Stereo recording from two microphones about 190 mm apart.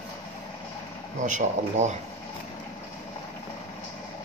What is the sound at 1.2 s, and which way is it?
Speech, 40° right (ahead or behind).